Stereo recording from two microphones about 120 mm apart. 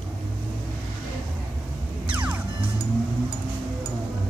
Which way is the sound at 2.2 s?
15° right (ahead or behind).